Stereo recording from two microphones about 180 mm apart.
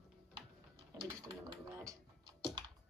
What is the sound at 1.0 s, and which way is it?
Typing, 20° right (ahead or behind).